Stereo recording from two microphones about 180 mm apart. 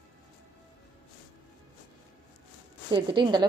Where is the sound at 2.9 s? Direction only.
25° right (ahead or behind).